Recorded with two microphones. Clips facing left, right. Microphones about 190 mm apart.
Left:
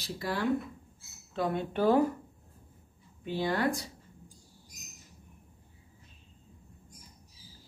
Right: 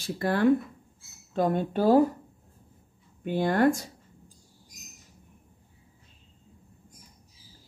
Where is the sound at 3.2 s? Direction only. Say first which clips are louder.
Right 7 dB; 50° right (ahead or behind).